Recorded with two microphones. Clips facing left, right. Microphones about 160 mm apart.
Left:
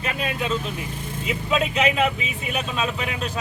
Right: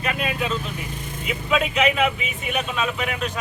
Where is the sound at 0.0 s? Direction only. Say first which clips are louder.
Right 1 dB; 30° left (ahead or behind).